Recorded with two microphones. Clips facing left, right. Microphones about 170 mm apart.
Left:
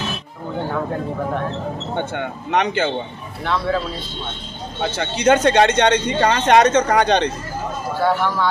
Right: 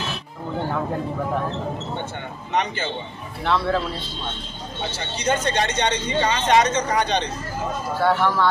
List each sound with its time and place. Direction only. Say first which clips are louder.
2.0 s a man's voice: left 7 dB; 65° left (ahead or behind)
3.4 s speech: left 1 dB; centre (ahead or behind)
4.9 s a man's voice: left 8 dB; 60° left (ahead or behind)
8.0 s speech: left 1 dB; centre (ahead or behind)